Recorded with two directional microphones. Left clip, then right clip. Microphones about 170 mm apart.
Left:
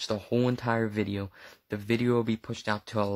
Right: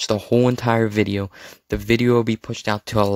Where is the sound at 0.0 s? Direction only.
45° right (ahead or behind).